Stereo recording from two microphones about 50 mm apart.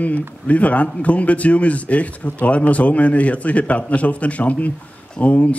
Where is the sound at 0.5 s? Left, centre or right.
Left.